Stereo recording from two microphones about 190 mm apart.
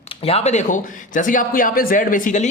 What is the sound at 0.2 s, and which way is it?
Speech, 30° left (ahead or behind).